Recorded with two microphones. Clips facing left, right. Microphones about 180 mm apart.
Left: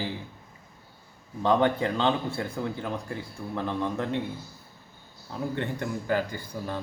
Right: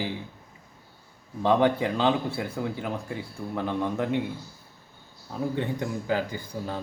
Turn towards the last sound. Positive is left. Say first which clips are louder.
# right 1 dB
turn(degrees=-15)  # may be behind; listen again after turning